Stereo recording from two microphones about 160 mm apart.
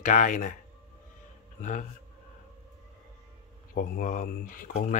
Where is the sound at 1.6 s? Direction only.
50° left (ahead or behind).